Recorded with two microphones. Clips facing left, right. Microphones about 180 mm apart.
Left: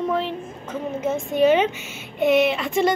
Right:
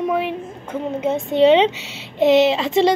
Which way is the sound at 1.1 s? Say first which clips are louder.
Right 4 dB; 70° right (ahead or behind).